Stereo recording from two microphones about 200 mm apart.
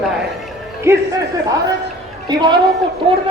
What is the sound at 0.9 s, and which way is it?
Speech, 15° right (ahead or behind).